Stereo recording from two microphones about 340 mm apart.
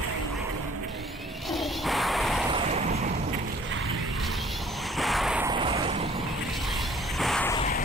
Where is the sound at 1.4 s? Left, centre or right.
Centre.